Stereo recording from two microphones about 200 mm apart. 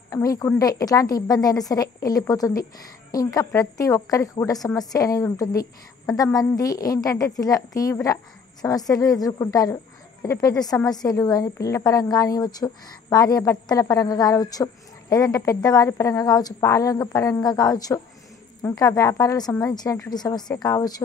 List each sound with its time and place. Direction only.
0.1 s a woman's voice: 15° left (ahead or behind)